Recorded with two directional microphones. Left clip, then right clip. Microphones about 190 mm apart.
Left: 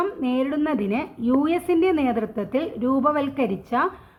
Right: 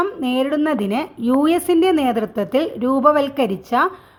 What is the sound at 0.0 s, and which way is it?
A woman's voice, 45° right (ahead or behind).